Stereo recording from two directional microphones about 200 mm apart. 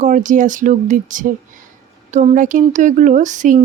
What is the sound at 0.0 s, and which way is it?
A woman's voice, 40° right (ahead or behind).